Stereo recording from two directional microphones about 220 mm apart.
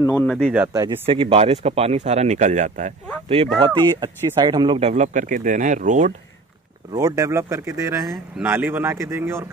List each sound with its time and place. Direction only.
0.0 s speech: 5° left (ahead or behind)
0.5 s speech: 5° right (ahead or behind)
0.8 s speech: 25° right (ahead or behind)
6.9 s speech: 15° right (ahead or behind)